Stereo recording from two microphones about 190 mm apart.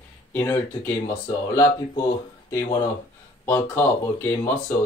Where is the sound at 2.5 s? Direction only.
15° left (ahead or behind).